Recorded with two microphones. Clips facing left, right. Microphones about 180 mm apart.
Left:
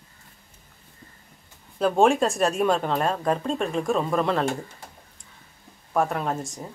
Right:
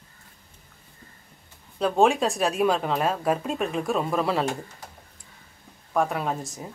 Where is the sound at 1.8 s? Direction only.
Centre (ahead or behind).